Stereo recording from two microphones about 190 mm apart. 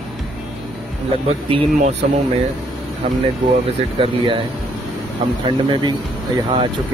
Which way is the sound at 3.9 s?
25° right (ahead or behind).